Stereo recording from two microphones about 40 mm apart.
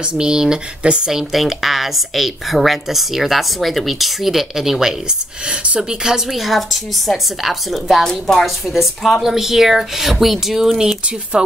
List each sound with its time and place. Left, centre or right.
0.0 s speech: centre
1.1 s a woman's voice: centre
5.5 s speech: right
5.8 s speech: centre
6.2 s a woman's voice: centre
8.0 s a woman's voice: centre
8.5 s a woman's voice: centre
11.3 s speech: right